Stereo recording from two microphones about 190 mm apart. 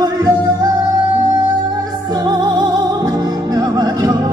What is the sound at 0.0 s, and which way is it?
Music, 20° right (ahead or behind).